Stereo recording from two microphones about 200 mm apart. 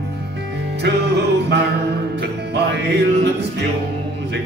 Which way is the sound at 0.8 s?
55° right (ahead or behind).